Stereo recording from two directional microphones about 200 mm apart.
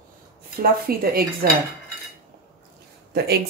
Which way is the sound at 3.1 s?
55° right (ahead or behind).